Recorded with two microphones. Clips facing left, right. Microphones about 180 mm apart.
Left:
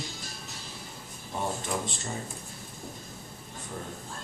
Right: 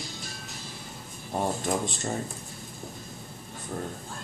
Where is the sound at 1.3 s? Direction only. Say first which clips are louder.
Right 4 dB; 40° right (ahead or behind).